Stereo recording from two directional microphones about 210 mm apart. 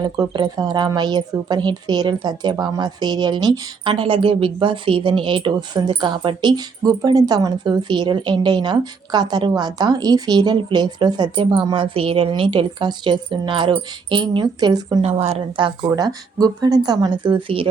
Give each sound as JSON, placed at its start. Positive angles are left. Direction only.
{"t": 0.0, "sound": "speech", "side_deg": -20}
{"t": 15.0, "sound": "speech", "side_deg": -30}